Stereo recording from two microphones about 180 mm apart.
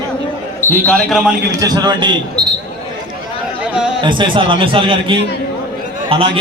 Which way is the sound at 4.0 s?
25° right (ahead or behind).